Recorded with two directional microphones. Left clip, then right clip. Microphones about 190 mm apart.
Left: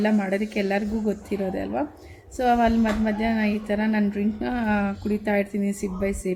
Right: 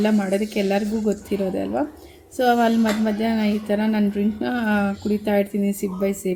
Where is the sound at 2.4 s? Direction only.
15° right (ahead or behind).